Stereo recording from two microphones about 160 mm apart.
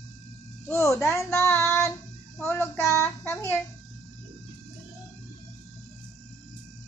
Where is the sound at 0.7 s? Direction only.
15° left (ahead or behind).